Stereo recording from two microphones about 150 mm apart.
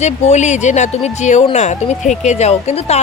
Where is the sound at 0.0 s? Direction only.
50° left (ahead or behind).